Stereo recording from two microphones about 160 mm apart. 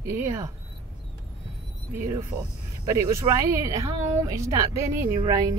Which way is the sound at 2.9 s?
20° right (ahead or behind).